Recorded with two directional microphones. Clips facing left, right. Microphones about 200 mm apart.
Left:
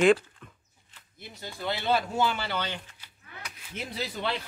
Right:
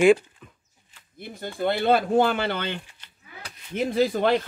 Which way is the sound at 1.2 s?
55° right (ahead or behind).